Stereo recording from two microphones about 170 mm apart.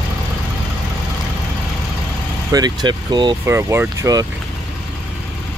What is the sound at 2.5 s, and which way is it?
Speech, 25° right (ahead or behind).